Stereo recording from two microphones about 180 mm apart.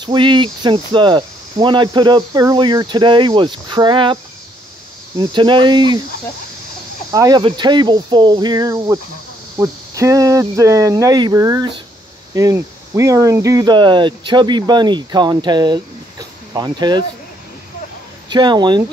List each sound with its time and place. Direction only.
0.0 s speech: 25° right (ahead or behind)
7.1 s speech: 20° right (ahead or behind)
18.3 s speech: 25° right (ahead or behind)